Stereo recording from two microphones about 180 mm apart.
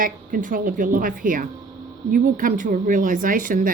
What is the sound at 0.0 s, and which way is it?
Speech, 50° right (ahead or behind).